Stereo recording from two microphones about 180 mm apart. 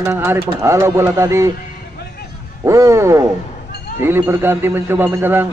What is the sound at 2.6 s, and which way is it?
Speech, 15° right (ahead or behind).